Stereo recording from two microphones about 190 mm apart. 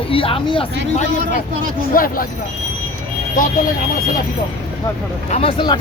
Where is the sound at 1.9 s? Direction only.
50° left (ahead or behind).